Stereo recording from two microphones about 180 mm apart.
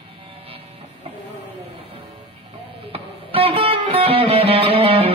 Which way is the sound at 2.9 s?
30° right (ahead or behind).